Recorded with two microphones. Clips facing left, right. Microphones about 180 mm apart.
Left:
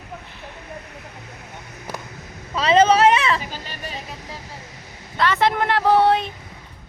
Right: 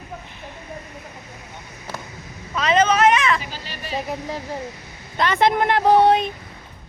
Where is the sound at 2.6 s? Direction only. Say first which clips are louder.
Left 2 dB; 30° left (ahead or behind).